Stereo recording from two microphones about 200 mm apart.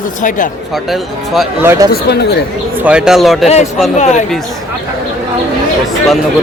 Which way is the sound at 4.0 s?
35° left (ahead or behind).